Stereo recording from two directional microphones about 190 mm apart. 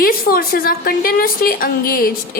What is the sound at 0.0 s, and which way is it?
A woman's voice, 50° left (ahead or behind).